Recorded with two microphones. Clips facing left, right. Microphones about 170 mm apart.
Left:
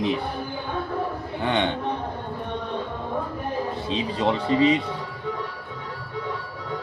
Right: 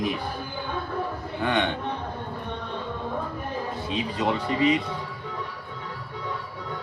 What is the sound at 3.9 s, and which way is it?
Speech, 25° left (ahead or behind).